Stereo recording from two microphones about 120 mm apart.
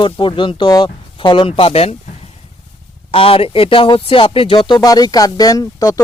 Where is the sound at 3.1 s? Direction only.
50° left (ahead or behind).